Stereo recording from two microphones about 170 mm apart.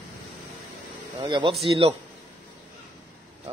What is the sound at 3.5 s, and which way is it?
Speech, 35° right (ahead or behind).